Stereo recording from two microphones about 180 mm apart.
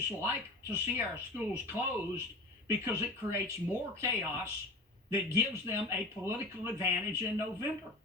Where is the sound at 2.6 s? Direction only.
15° right (ahead or behind).